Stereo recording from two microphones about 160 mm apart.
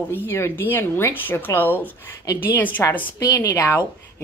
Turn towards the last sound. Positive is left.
turn(degrees=20)  # may be behind; listen again after turning